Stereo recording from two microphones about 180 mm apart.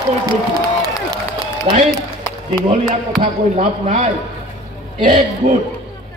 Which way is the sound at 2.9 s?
35° right (ahead or behind).